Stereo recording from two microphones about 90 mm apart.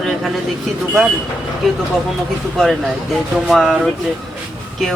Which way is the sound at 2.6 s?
Centre (ahead or behind).